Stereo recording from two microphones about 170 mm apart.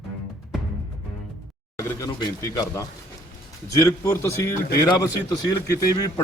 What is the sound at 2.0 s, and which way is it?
A man's voice, 25° left (ahead or behind).